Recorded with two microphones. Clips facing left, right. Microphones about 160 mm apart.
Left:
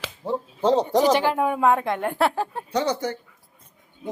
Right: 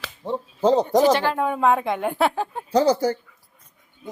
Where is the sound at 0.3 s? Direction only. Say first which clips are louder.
Right 2 dB; 5° right (ahead or behind).